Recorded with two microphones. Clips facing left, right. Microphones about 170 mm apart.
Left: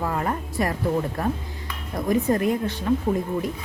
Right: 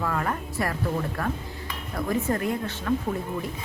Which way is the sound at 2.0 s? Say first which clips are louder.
Left 5 dB; 20° left (ahead or behind).